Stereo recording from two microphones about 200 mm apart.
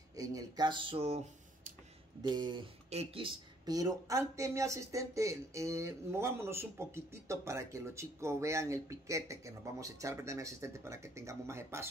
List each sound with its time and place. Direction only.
0.1 s speech: 15° right (ahead or behind)